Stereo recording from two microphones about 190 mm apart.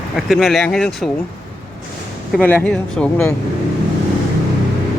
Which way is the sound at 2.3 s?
10° left (ahead or behind).